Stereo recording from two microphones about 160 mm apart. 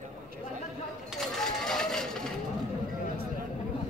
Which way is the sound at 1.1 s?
5° left (ahead or behind).